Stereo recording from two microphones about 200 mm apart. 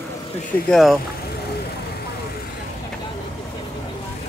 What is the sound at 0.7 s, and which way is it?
Speech, centre (ahead or behind).